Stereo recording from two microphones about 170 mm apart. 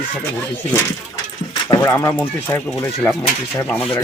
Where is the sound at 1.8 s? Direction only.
15° left (ahead or behind).